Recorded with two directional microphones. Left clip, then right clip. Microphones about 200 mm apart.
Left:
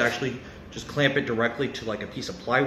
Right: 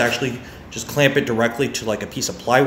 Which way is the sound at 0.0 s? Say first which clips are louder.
Right 5 dB; 30° right (ahead or behind).